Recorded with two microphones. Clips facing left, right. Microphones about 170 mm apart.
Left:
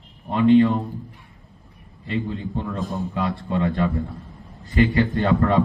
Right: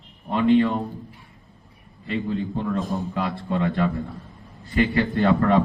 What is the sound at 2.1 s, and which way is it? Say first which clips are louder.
A man's voice: right 1 dB; centre (ahead or behind).